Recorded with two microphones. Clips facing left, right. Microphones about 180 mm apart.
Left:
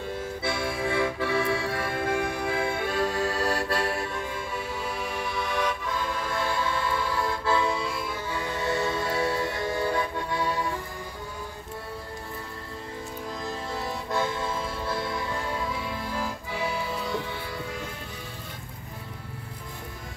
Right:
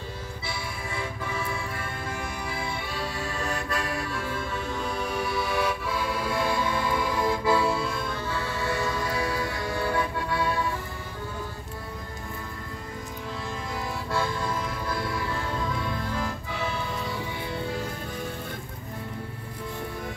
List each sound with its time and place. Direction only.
0.4 s music: 55° left (ahead or behind)
0.7 s music: 75° left (ahead or behind); by 10.5 s 15° left (ahead or behind)
14.1 s music: 20° left (ahead or behind)
15.5 s music: 10° left (ahead or behind)